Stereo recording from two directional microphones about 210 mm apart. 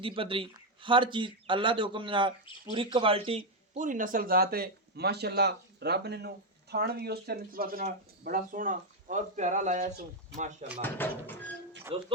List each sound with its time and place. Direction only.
0.0 s a man's voice: 25° right (ahead or behind)
3.8 s speech: 40° right (ahead or behind)
10.8 s speech: 10° left (ahead or behind)
11.9 s speech: 25° right (ahead or behind)